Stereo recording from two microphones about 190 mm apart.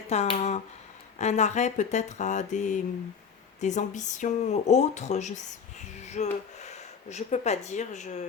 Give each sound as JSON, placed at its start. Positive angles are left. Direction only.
{"t": 0.1, "sound": "speech", "side_deg": 35}